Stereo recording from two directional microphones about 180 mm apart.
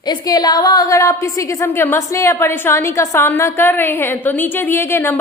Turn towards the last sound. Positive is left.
turn(degrees=15)  # may be behind; listen again after turning